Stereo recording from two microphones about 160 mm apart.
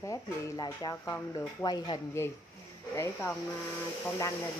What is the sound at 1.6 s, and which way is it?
Speech, 25° left (ahead or behind).